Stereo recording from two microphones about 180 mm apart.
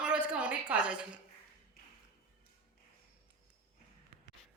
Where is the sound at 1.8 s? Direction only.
60° left (ahead or behind).